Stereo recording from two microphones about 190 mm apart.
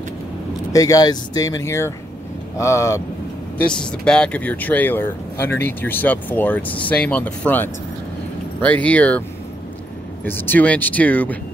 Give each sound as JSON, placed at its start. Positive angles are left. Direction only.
{"t": 0.7, "sound": "speech", "side_deg": 20}
{"t": 3.6, "sound": "speech", "side_deg": 5}
{"t": 10.2, "sound": "speech", "side_deg": 10}